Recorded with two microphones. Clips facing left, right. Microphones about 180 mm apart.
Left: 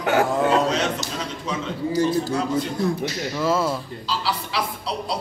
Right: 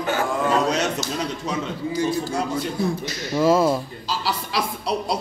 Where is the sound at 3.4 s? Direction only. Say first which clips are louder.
Right 5 dB; 15° right (ahead or behind).